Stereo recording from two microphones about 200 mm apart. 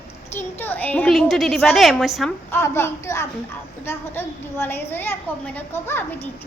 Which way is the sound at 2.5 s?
10° left (ahead or behind).